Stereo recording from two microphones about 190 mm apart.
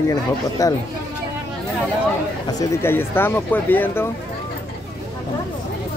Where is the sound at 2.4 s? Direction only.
10° left (ahead or behind).